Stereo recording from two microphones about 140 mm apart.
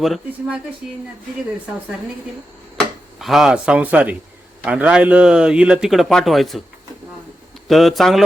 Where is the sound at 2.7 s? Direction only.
Centre (ahead or behind).